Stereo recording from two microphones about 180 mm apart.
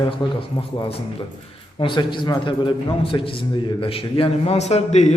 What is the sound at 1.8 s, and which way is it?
A man's voice, 25° left (ahead or behind).